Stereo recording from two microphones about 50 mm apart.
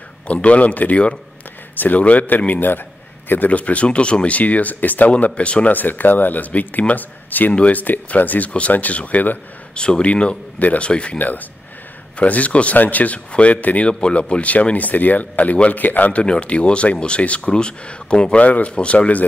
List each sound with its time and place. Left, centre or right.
0.3 s speech: left
5.1 s speech: left
9.8 s speech: centre
11.1 s speech: left